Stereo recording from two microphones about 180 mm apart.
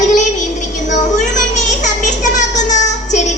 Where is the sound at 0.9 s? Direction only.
45° left (ahead or behind).